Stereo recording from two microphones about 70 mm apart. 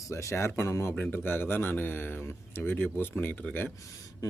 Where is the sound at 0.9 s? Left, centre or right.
Left.